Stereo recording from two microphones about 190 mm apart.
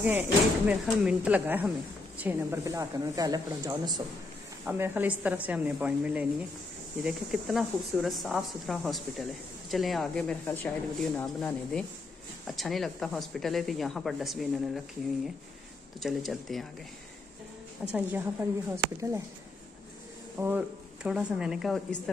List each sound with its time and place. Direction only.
0.0 s a woman's voice: 10° right (ahead or behind)
16.0 s speech: centre (ahead or behind)
17.9 s a woman's voice: 10° right (ahead or behind)
20.3 s speech: 10° right (ahead or behind)